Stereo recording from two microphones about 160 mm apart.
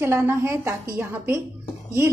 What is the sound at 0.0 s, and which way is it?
A woman's voice, 15° right (ahead or behind).